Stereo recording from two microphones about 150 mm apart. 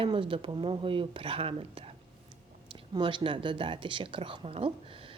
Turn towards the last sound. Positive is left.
turn(degrees=-40)  # may be behind; listen again after turning